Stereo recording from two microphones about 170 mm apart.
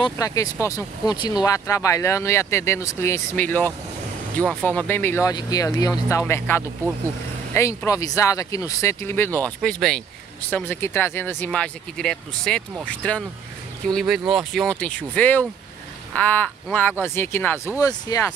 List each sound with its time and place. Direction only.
0.0 s speech: 20° left (ahead or behind); by 10.0 s centre (ahead or behind)
10.5 s speech: 10° left (ahead or behind)